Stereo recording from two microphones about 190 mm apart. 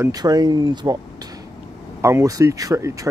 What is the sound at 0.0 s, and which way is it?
Speech, 20° right (ahead or behind).